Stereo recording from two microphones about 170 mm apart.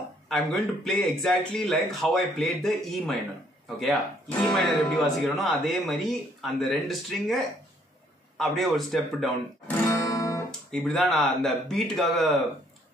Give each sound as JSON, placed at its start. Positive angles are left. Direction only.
{"t": 0.3, "sound": "speech", "side_deg": 0}
{"t": 10.0, "sound": "guitar", "side_deg": 20}
{"t": 10.7, "sound": "speech", "side_deg": 5}